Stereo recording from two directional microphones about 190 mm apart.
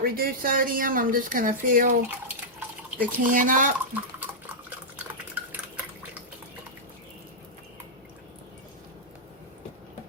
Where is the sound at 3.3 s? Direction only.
45° right (ahead or behind).